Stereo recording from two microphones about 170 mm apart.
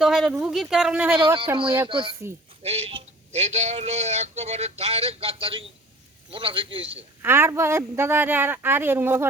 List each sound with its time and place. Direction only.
0.0 s speech: centre (ahead or behind)
1.6 s speech: 15° right (ahead or behind)
1.9 s speech: 30° right (ahead or behind)
7.2 s speech: 15° right (ahead or behind)